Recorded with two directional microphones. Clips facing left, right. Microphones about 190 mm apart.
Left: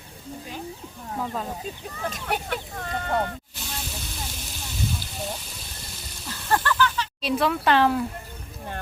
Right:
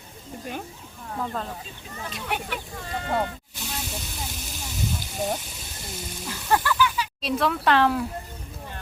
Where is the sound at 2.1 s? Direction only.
40° left (ahead or behind).